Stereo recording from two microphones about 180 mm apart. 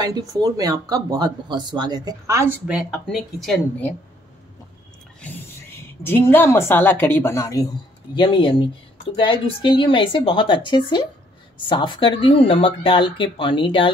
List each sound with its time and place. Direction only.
0.0 s speech: 20° right (ahead or behind); by 3.9 s 5° left (ahead or behind)
6.0 s a woman's voice: 10° left (ahead or behind)
8.1 s speech: 25° left (ahead or behind)